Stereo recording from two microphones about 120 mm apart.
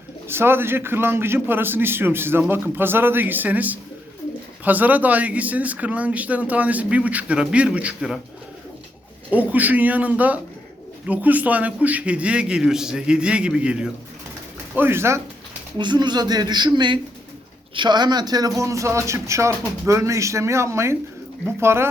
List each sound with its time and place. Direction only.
0.3 s speech: 20° right (ahead or behind)
9.3 s speech: 15° right (ahead or behind)
14.8 s a man's voice: 20° right (ahead or behind)
15.8 s a man's voice: 40° right (ahead or behind); by 21.8 s 20° right (ahead or behind)